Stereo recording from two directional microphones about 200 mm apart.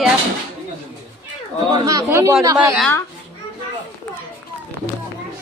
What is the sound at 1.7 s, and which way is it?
Speech, 20° right (ahead or behind).